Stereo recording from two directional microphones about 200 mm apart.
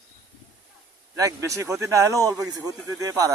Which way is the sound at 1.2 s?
15° right (ahead or behind).